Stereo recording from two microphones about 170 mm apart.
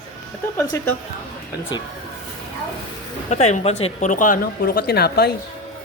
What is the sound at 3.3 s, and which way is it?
Speech, 40° left (ahead or behind).